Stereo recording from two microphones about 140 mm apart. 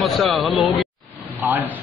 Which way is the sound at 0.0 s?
Centre (ahead or behind).